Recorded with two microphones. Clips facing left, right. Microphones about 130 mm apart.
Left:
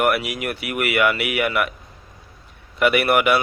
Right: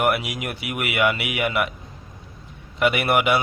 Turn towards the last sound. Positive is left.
turn(degrees=-20)  # may be behind; listen again after turning